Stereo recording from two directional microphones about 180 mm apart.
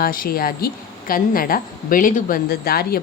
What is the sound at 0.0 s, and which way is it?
A woman's voice, 55° left (ahead or behind).